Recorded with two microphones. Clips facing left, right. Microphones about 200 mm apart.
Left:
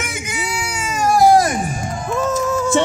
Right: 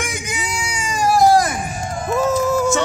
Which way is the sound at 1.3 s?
30° left (ahead or behind).